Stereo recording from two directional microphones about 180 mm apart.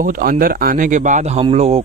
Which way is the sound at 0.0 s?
50° right (ahead or behind).